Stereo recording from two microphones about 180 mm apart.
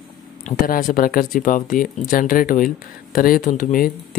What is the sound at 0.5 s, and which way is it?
Speech, 50° left (ahead or behind).